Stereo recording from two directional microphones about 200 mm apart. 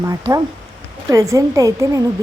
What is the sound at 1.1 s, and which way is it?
Speech, 15° right (ahead or behind).